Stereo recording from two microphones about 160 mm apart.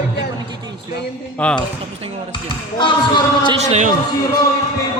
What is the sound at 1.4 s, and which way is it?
Speech, 5° left (ahead or behind).